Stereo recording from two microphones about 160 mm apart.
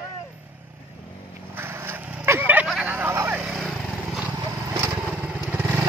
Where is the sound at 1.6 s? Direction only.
15° right (ahead or behind).